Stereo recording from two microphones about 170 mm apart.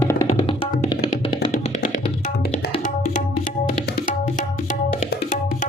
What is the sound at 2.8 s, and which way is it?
Tabla, 50° left (ahead or behind).